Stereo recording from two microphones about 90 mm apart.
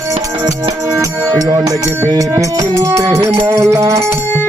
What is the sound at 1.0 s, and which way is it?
Music, 35° right (ahead or behind).